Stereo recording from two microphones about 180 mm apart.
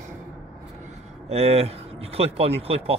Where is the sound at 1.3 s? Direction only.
35° right (ahead or behind).